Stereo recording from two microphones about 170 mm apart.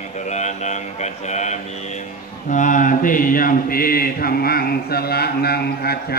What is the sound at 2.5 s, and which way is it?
Mantra, 50° left (ahead or behind).